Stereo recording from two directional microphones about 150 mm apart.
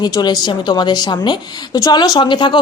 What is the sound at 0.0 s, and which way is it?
Speech, 25° left (ahead or behind).